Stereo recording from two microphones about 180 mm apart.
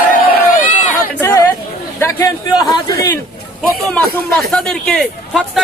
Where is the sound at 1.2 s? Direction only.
10° left (ahead or behind).